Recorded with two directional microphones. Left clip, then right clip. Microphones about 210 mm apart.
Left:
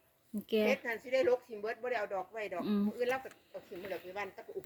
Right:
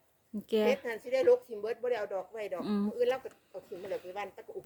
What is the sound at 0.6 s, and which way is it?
Speech, 55° right (ahead or behind).